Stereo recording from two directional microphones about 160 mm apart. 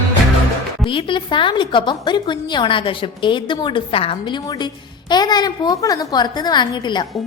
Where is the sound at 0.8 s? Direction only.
30° left (ahead or behind).